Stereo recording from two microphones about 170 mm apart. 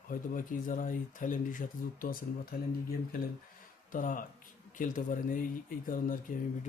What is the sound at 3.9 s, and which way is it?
Speech, 50° left (ahead or behind).